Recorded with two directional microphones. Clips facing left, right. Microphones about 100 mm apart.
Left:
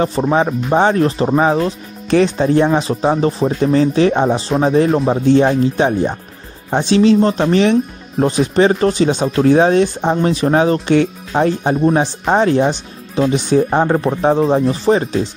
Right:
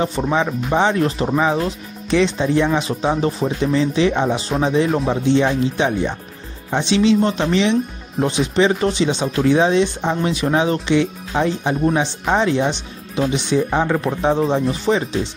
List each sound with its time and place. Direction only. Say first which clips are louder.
0.0 s speech: left 4 dB; 40° left (ahead or behind)
2.0 s speech: left 4 dB; 45° left (ahead or behind)